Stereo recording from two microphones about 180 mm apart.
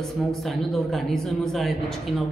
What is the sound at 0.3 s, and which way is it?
A woman's voice, centre (ahead or behind).